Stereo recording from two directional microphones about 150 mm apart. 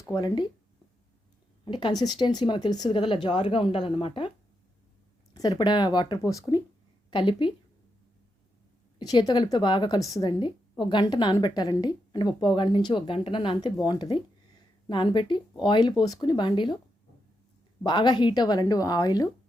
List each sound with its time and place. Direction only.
0.1 s a woman's voice: 30° left (ahead or behind)
1.6 s speech: 35° left (ahead or behind)
5.3 s a woman's voice: 25° left (ahead or behind)
7.1 s speech: 35° left (ahead or behind)
9.0 s a woman's voice: 25° left (ahead or behind)
17.8 s a woman's voice: 30° left (ahead or behind)